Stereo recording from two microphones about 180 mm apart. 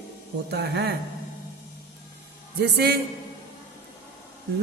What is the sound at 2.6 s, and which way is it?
Speech, 65° right (ahead or behind).